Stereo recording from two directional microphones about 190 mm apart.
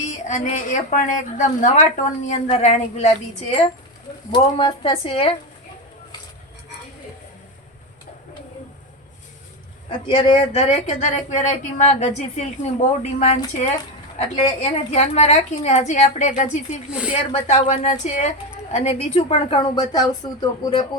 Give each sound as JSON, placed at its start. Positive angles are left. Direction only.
{"t": 0.0, "sound": "a woman's voice", "side_deg": 40}
{"t": 4.3, "sound": "a woman's voice", "side_deg": 25}
{"t": 10.1, "sound": "a woman's voice", "side_deg": 25}
{"t": 16.9, "sound": "speech", "side_deg": -5}
{"t": 17.3, "sound": "a woman's voice", "side_deg": 35}